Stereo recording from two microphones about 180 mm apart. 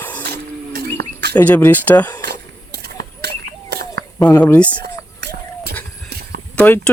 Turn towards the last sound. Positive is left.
turn(degrees=10)  # may be behind; listen again after turning